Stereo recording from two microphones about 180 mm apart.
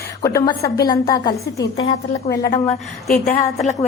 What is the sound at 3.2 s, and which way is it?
Speech, 45° left (ahead or behind).